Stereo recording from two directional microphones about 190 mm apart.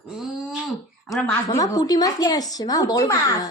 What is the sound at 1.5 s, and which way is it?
A woman's voice, 20° left (ahead or behind).